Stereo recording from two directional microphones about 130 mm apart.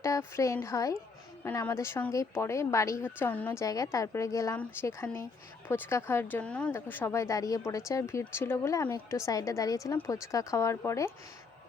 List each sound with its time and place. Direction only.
0.0 s a woman's voice: 20° left (ahead or behind)